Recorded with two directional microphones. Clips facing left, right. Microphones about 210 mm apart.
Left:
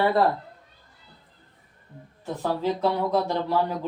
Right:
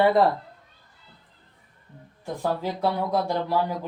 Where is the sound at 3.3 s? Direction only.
10° right (ahead or behind).